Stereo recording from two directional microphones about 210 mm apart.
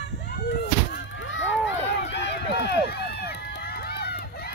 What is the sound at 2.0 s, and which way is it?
Run, 55° left (ahead or behind).